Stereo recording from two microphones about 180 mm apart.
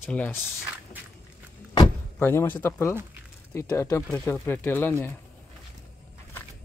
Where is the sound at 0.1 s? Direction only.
10° left (ahead or behind).